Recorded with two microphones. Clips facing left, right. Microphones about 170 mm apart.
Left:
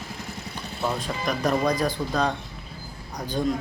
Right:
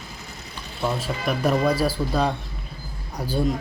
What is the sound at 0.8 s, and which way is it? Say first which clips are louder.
Speech: right 2 dB; 5° right (ahead or behind).